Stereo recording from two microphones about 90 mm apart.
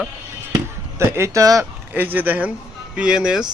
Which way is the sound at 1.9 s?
20° right (ahead or behind).